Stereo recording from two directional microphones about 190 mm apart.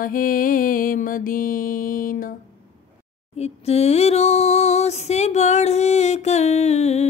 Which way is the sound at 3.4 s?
35° left (ahead or behind).